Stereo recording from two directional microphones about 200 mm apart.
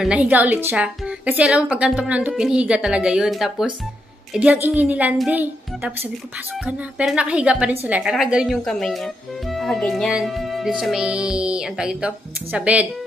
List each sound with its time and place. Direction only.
0.0 s a woman's voice: 5° right (ahead or behind)